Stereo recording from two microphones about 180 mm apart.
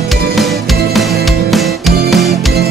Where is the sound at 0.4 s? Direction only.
Centre (ahead or behind).